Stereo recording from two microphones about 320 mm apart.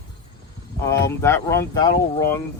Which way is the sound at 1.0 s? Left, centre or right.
Centre.